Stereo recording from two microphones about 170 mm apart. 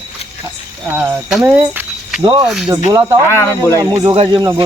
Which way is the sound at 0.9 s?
15° right (ahead or behind).